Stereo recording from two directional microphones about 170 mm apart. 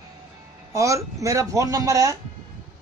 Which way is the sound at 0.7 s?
20° right (ahead or behind).